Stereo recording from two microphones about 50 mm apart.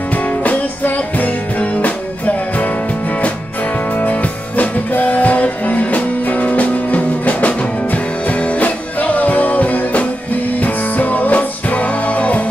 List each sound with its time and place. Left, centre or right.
0.1 s music: left